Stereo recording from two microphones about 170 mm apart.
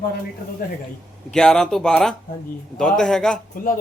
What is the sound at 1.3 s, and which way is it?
Speech, 5° left (ahead or behind).